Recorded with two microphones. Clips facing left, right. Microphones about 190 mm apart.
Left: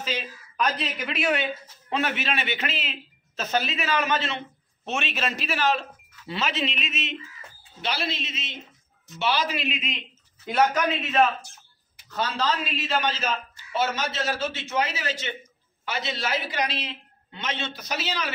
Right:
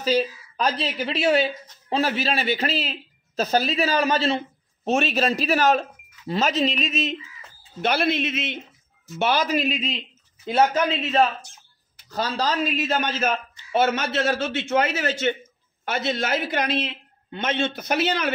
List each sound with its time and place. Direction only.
0.0 s speech: 35° right (ahead or behind)
7.8 s a man's voice: 55° right (ahead or behind)